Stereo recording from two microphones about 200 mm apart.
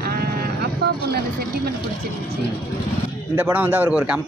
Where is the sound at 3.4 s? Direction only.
5° right (ahead or behind).